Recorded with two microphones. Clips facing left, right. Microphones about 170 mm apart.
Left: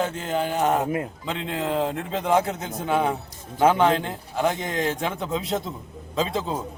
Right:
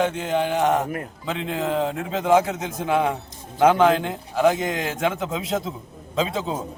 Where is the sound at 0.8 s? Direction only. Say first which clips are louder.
Left 2 dB; 20° left (ahead or behind).